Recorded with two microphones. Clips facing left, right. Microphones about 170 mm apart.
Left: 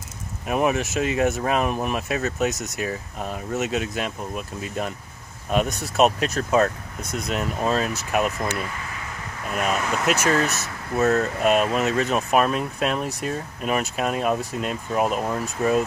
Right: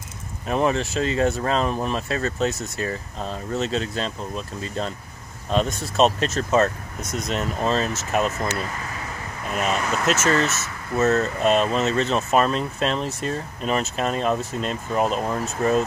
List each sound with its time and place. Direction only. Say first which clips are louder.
0.5 s speech: even; 10° left (ahead or behind)
2.5 s speech: even; 20° left (ahead or behind)
7.0 s speech: right 1 dB; 55° left (ahead or behind)
7.2 s speech: even; 5° left (ahead or behind)
9.5 s speech: even; 5° left (ahead or behind)
11.0 s speech: even; centre (ahead or behind)